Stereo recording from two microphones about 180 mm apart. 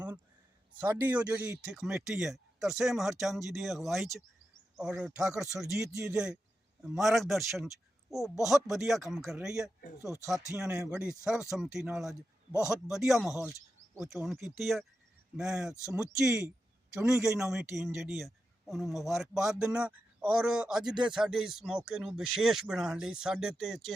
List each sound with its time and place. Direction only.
0.8 s a man's voice: 10° right (ahead or behind)
5.8 s a man's voice: 15° right (ahead or behind)
20.8 s speech: 25° right (ahead or behind)
21.1 s a man's voice: 5° right (ahead or behind)